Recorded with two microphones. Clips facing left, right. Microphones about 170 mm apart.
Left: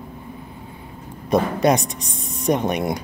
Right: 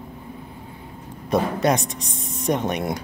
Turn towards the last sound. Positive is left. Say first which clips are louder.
# left 2 dB
turn(degrees=15)  # may be behind; listen again after turning